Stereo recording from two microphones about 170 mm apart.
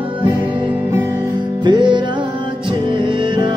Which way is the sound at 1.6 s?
25° right (ahead or behind).